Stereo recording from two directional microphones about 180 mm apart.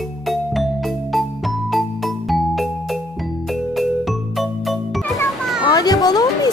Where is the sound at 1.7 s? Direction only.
Centre (ahead or behind).